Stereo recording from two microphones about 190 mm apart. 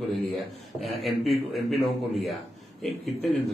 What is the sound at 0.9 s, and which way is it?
Speech, centre (ahead or behind).